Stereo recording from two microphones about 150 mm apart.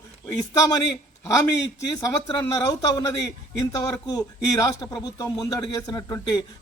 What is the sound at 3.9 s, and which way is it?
A man's voice, 25° left (ahead or behind).